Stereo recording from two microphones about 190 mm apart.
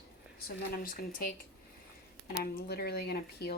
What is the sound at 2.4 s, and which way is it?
A woman's voice, 55° left (ahead or behind).